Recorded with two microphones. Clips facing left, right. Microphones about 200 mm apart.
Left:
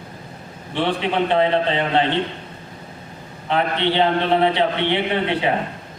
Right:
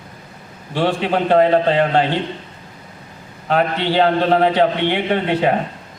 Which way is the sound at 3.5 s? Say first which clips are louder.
Right 3 dB; 40° right (ahead or behind).